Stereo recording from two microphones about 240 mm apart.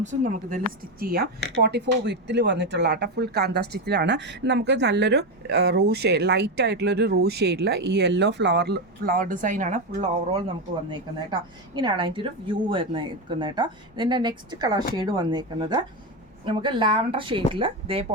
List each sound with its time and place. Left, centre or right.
0.0 s a woman's voice: right
10.9 s a woman's voice: centre